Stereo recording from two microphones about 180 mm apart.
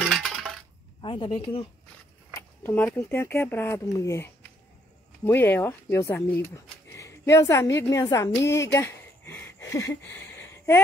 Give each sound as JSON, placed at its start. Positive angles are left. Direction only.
{"t": 0.0, "sound": "coin", "side_deg": 0}
{"t": 1.0, "sound": "a woman's voice", "side_deg": 30}
{"t": 2.3, "sound": "speech", "side_deg": 10}